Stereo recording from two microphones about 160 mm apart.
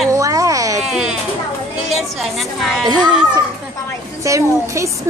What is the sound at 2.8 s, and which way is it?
Speech, 25° right (ahead or behind).